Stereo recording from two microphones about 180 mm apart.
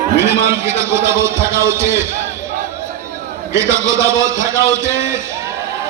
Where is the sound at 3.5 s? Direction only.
15° right (ahead or behind).